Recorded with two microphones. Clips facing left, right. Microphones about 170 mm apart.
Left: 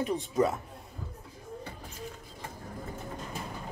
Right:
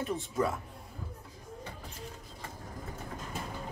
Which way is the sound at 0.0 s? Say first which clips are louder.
Left 4 dB; 15° left (ahead or behind).